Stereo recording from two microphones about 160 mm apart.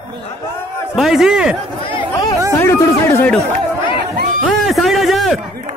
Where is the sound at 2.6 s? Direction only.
15° left (ahead or behind).